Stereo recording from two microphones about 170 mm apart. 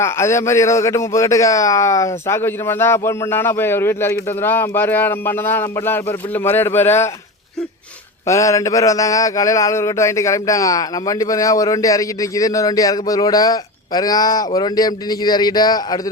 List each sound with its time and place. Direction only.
0.0 s a man's voice: 15° left (ahead or behind)
8.3 s mantra: 20° left (ahead or behind)